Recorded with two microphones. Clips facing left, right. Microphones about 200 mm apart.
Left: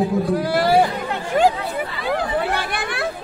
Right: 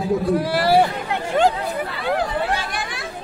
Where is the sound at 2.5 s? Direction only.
60° left (ahead or behind).